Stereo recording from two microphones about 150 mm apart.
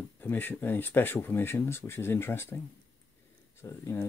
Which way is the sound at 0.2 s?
15° left (ahead or behind).